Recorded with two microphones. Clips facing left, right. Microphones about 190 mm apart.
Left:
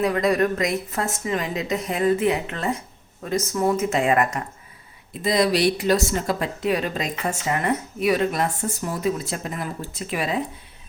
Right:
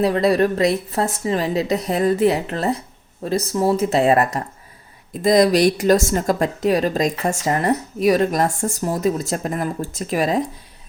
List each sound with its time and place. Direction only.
0.0 s speech: 35° right (ahead or behind)